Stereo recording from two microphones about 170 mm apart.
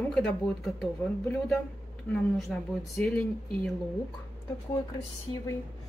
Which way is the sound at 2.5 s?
5° left (ahead or behind).